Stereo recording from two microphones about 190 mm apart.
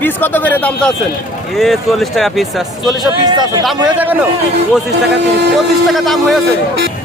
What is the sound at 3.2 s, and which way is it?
Speech, 20° right (ahead or behind).